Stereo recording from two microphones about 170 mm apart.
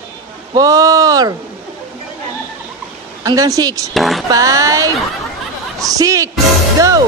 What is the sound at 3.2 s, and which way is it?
Speech, 20° right (ahead or behind).